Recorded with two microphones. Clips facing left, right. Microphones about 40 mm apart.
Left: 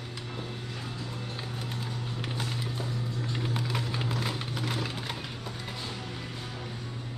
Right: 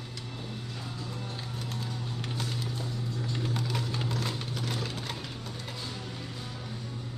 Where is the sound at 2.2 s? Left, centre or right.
Centre.